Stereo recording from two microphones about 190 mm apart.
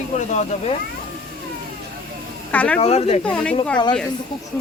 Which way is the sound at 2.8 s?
35° left (ahead or behind).